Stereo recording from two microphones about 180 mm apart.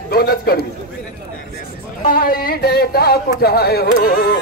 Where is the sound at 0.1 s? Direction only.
55° left (ahead or behind).